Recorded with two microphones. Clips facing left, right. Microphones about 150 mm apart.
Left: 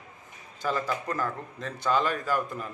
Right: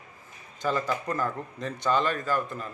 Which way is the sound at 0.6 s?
Centre (ahead or behind).